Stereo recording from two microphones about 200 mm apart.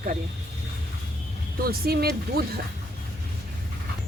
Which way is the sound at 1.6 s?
50° right (ahead or behind).